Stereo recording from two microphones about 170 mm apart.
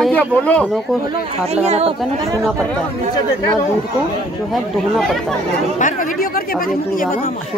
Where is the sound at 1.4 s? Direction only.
40° right (ahead or behind).